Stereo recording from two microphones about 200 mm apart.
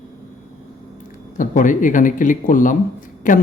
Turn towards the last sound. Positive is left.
turn(degrees=40)  # may be behind; listen again after turning